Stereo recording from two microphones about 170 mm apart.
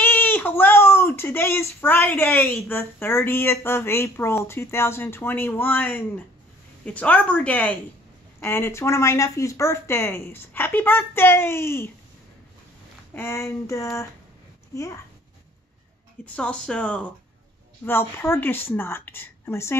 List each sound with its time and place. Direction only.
0.0 s a sound: 10° left (ahead or behind)
2.3 s speech: 15° left (ahead or behind)
13.1 s speech: 15° left (ahead or behind)
16.3 s speech: 5° left (ahead or behind)